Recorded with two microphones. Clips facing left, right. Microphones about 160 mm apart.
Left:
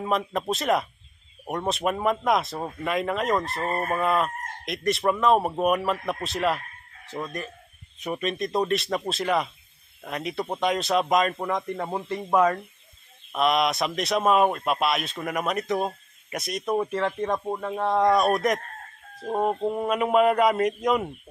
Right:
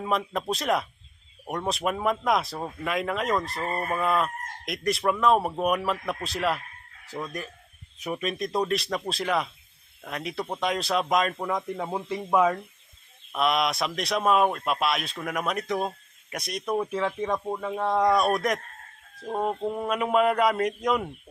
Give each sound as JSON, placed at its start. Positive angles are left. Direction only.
{"t": 0.0, "sound": "speech", "side_deg": 0}
{"t": 3.6, "sound": "chicken", "side_deg": 25}
{"t": 4.0, "sound": "speech", "side_deg": 0}
{"t": 19.6, "sound": "speech", "side_deg": 15}
{"t": 19.9, "sound": "speech", "side_deg": 5}